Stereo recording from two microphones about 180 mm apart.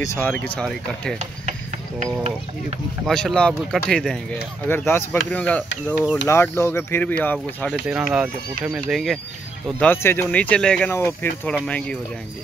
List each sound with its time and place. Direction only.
0.0 s speech: 15° left (ahead or behind)
0.3 s speech: 5° left (ahead or behind)
3.1 s speech: centre (ahead or behind)
7.9 s speech: 5° right (ahead or behind)
9.8 s speech: 10° left (ahead or behind)